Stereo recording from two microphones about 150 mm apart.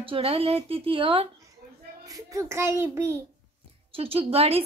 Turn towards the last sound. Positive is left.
turn(degrees=-40)  # may be behind; listen again after turning